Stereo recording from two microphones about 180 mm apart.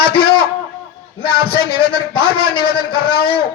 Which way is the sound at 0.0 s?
60° left (ahead or behind).